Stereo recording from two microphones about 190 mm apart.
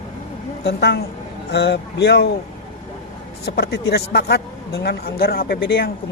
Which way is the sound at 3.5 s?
60° left (ahead or behind).